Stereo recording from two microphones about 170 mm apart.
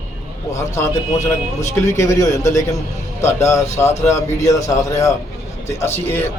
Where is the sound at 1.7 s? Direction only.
15° left (ahead or behind).